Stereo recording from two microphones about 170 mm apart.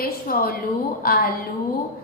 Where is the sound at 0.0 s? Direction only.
60° left (ahead or behind).